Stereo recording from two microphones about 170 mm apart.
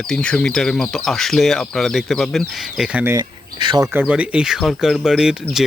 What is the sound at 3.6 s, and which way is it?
Speech, 25° right (ahead or behind).